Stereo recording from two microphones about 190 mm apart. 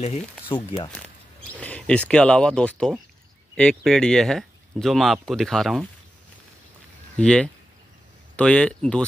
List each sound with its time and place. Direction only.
0.5 s speech: 30° left (ahead or behind)
1.6 s speech: 5° left (ahead or behind)
7.2 s speech: 5° left (ahead or behind)